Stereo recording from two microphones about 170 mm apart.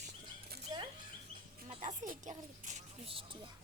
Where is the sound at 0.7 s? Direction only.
20° right (ahead or behind).